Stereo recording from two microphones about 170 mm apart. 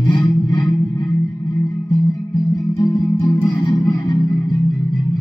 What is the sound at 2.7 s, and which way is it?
Music, 25° left (ahead or behind).